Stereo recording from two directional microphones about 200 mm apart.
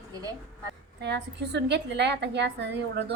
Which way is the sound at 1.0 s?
60° right (ahead or behind).